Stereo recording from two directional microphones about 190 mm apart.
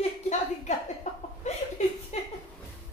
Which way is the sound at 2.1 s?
35° left (ahead or behind).